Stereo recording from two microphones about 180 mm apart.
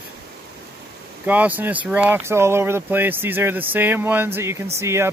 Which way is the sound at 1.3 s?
10° right (ahead or behind).